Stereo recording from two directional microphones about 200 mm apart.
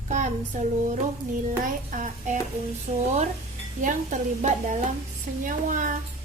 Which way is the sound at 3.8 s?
40° right (ahead or behind).